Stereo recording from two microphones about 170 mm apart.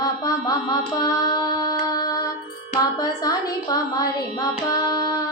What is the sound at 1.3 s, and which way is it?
Music, 25° left (ahead or behind).